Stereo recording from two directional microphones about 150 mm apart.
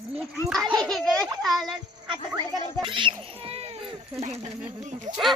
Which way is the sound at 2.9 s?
35° right (ahead or behind).